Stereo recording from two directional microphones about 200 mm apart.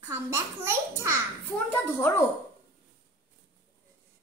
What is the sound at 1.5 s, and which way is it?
Speech, 10° left (ahead or behind).